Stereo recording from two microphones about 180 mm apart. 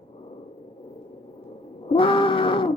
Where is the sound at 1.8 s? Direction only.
30° left (ahead or behind).